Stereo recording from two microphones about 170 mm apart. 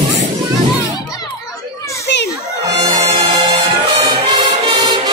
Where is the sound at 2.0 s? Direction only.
80° left.